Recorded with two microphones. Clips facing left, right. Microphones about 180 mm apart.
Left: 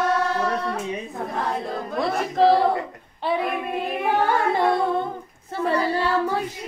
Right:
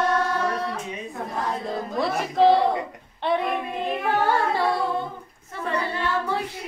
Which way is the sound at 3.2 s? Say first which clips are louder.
Even; 5° left (ahead or behind).